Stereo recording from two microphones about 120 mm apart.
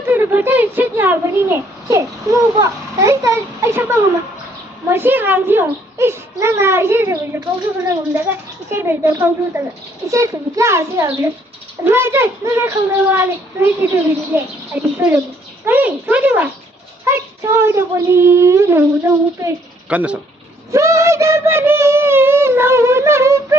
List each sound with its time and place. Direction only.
0.0 s a child's voice: 15° right (ahead or behind)
19.9 s speech: 10° right (ahead or behind)
20.7 s speech: 25° right (ahead or behind)